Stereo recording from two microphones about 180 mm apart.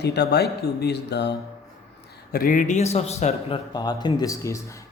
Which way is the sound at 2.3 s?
50° left (ahead or behind).